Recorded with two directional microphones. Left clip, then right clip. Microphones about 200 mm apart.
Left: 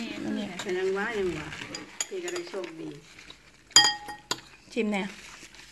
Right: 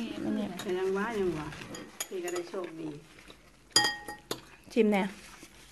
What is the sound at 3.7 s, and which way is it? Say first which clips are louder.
Glass: left 7 dB; 15° right (ahead or behind).